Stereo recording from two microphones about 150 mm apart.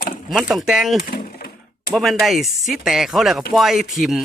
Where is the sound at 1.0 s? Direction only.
75° left (ahead or behind).